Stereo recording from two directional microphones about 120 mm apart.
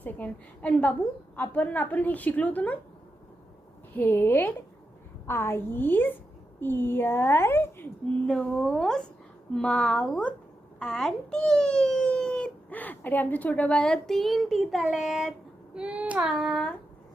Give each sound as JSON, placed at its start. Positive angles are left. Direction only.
{"t": 0.0, "sound": "a woman's voice", "side_deg": 10}
{"t": 3.9, "sound": "a woman's voice", "side_deg": 15}
{"t": 8.3, "sound": "a woman's voice", "side_deg": 10}